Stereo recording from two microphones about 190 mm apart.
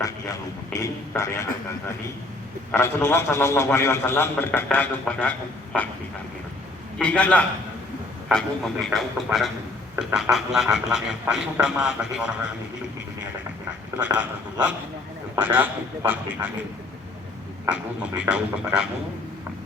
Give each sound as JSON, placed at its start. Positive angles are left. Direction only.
{"t": 0.0, "sound": "a man's voice", "side_deg": 20}
{"t": 2.7, "sound": "a man's voice", "side_deg": 15}
{"t": 5.7, "sound": "speech", "side_deg": -5}
{"t": 7.0, "sound": "a man's voice", "side_deg": 5}
{"t": 14.2, "sound": "a man's voice", "side_deg": -10}
{"t": 17.7, "sound": "speech", "side_deg": -5}